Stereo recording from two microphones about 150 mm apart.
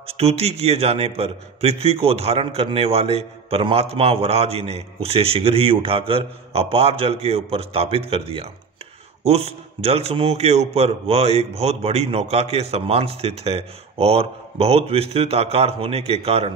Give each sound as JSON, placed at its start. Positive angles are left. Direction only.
{"t": 0.0, "sound": "a man's voice", "side_deg": -40}